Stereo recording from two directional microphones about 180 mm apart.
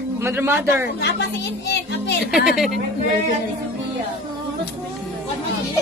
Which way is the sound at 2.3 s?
Centre (ahead or behind).